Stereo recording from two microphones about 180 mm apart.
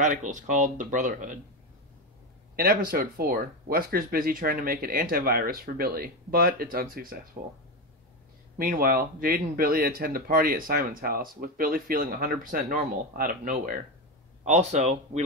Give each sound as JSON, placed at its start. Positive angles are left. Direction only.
{"t": 0.0, "sound": "speech", "side_deg": -45}
{"t": 2.5, "sound": "speech", "side_deg": -55}
{"t": 8.5, "sound": "speech", "side_deg": -55}
{"t": 14.4, "sound": "speech", "side_deg": -40}